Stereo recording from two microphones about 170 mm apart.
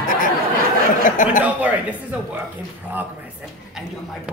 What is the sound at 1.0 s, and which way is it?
Speech, 50° left (ahead or behind).